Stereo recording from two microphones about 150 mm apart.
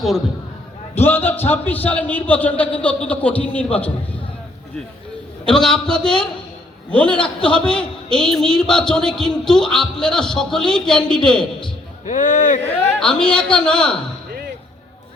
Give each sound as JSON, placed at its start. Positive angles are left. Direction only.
{"t": 0.9, "sound": "a man's voice", "side_deg": 15}
{"t": 5.5, "sound": "a man's voice", "side_deg": 5}
{"t": 12.0, "sound": "a man's voice", "side_deg": 60}
{"t": 13.0, "sound": "a man's voice", "side_deg": 5}